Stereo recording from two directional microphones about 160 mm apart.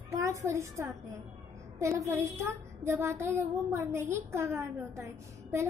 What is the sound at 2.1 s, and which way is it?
Speech, 15° right (ahead or behind).